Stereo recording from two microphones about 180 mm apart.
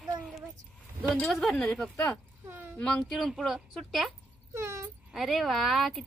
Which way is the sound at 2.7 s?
Centre (ahead or behind).